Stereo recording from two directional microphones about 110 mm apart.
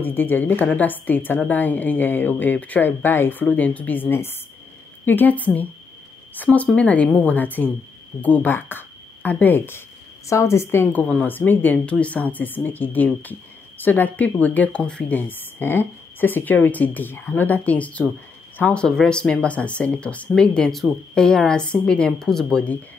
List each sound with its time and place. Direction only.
0.0 s a woman's voice: 15° left (ahead or behind)